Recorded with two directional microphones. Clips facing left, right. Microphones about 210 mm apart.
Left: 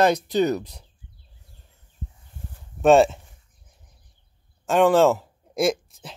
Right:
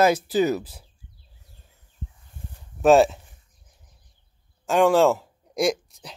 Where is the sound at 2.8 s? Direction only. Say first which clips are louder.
Even; centre (ahead or behind).